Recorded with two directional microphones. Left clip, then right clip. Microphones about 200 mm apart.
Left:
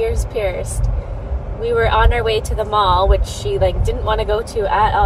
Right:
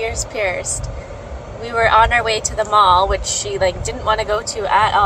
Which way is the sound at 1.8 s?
15° right (ahead or behind).